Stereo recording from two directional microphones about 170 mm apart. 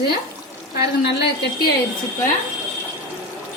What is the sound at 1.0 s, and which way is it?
Speech, 75° left (ahead or behind).